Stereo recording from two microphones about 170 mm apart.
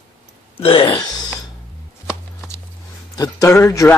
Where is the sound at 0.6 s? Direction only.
30° left (ahead or behind).